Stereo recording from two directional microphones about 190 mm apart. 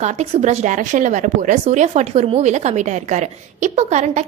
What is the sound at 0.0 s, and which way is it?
Speech, 35° right (ahead or behind).